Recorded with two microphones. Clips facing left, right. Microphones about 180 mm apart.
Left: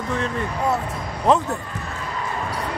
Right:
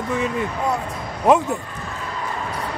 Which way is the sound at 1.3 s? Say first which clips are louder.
Right 2 dB; 10° right (ahead or behind).